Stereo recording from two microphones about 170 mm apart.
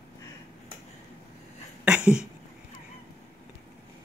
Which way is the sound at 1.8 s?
5° right (ahead or behind).